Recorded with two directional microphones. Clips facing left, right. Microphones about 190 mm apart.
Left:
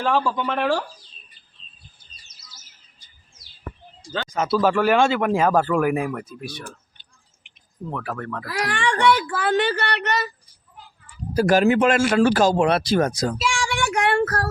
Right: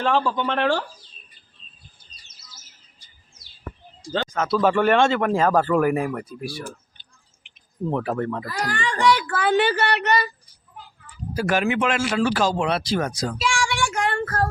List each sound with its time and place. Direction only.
0.0 s speech: 5° left (ahead or behind)
4.3 s speech: 10° left (ahead or behind)
4.5 s speech: centre (ahead or behind)
7.9 s speech: 25° right (ahead or behind)
8.4 s speech: 75° left (ahead or behind)
9.2 s speech: 5° left (ahead or behind)
11.3 s speech: 35° left (ahead or behind)
13.7 s a sound: 55° left (ahead or behind); by 14.4 s 75° left (ahead or behind)